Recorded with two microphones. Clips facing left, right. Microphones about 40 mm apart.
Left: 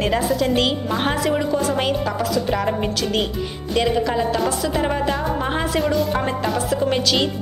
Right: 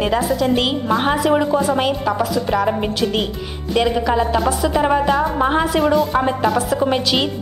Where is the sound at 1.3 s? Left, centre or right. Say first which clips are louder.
Right 4 dB; centre.